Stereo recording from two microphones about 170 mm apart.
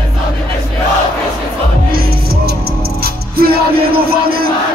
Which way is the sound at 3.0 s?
65° right (ahead or behind).